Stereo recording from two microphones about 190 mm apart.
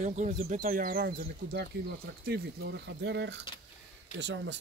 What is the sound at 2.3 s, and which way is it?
Speech, 65° right (ahead or behind).